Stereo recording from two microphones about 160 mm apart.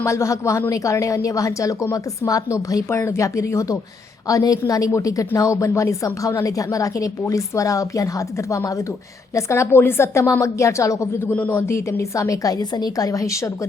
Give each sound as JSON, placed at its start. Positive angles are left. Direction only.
{"t": 0.0, "sound": "a woman's voice", "side_deg": 20}